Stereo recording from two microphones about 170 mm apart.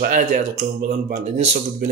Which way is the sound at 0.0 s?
50° right (ahead or behind).